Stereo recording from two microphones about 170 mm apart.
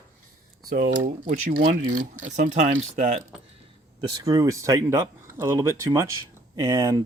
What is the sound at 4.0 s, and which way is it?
Speech, 25° right (ahead or behind).